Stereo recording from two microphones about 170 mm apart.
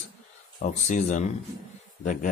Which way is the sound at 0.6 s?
45° left (ahead or behind).